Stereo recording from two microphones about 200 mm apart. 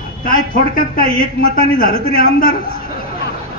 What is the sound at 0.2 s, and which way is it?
Speech, 45° left (ahead or behind).